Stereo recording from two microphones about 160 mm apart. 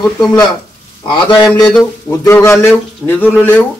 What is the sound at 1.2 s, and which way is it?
Speech, 30° left (ahead or behind).